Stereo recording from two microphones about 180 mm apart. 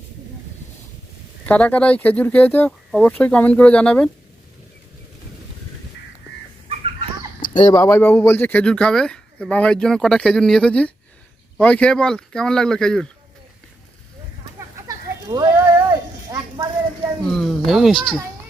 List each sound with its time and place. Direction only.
1.5 s speech: 5° left (ahead or behind)
7.5 s speech: 20° left (ahead or behind); by 13.1 s 5° left (ahead or behind)
14.8 s a sound: 20° right (ahead or behind)
17.3 s speech: centre (ahead or behind)